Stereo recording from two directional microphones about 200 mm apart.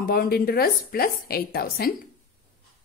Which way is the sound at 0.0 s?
50° left (ahead or behind).